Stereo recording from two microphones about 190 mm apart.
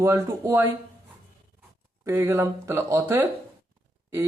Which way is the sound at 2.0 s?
15° right (ahead or behind).